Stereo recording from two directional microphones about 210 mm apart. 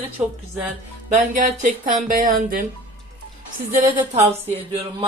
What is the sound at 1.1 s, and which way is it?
A woman's voice, 35° right (ahead or behind).